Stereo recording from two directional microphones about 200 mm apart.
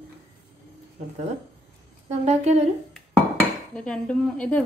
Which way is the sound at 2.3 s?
35° right (ahead or behind).